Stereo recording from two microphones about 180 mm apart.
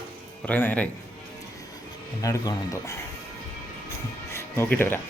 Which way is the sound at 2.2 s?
20° left (ahead or behind).